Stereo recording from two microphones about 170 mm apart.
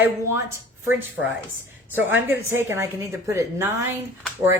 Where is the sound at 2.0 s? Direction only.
10° right (ahead or behind).